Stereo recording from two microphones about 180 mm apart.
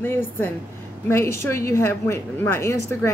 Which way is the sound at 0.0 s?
10° left (ahead or behind).